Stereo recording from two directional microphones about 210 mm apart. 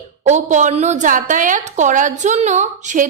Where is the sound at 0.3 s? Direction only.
35° right (ahead or behind).